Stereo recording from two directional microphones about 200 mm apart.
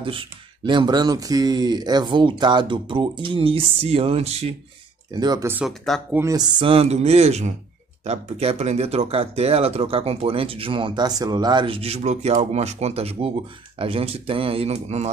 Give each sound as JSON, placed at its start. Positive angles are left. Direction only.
{"t": 0.0, "sound": "speech", "side_deg": -25}
{"t": 5.1, "sound": "speech", "side_deg": -20}
{"t": 5.7, "sound": "speech", "side_deg": 0}
{"t": 6.1, "sound": "speech", "side_deg": -15}